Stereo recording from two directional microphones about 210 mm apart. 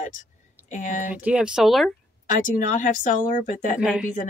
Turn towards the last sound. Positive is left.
turn(degrees=-5)  # may be behind; listen again after turning